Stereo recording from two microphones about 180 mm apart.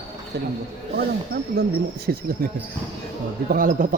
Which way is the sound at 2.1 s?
65° right (ahead or behind).